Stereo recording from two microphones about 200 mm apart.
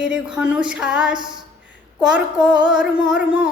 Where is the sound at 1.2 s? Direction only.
20° right (ahead or behind).